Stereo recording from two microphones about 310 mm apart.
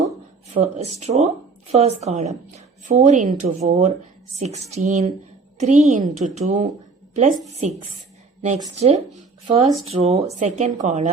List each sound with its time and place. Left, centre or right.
0.5 s a woman's voice: right